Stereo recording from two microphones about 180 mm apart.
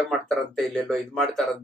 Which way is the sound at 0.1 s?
Centre (ahead or behind).